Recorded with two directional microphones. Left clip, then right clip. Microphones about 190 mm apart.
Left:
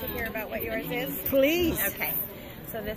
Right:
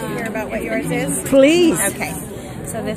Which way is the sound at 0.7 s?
30° left (ahead or behind).